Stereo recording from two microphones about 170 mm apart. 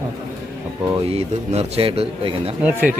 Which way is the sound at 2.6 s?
10° right (ahead or behind).